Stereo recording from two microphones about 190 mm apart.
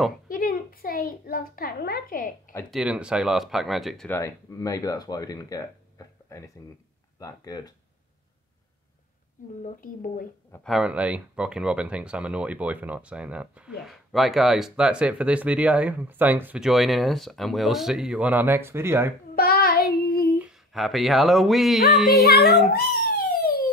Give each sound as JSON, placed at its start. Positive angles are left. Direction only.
{"t": 0.3, "sound": "a child's voice", "side_deg": 50}
{"t": 2.7, "sound": "speech", "side_deg": -5}
{"t": 4.2, "sound": "speech", "side_deg": 15}
{"t": 9.6, "sound": "a woman's voice", "side_deg": 45}
{"t": 10.5, "sound": "speech", "side_deg": 0}
{"t": 19.3, "sound": "child singing", "side_deg": 55}
{"t": 20.3, "sound": "speech", "side_deg": -5}
{"t": 22.2, "sound": "speech", "side_deg": 55}
{"t": 22.7, "sound": "a sound", "side_deg": 55}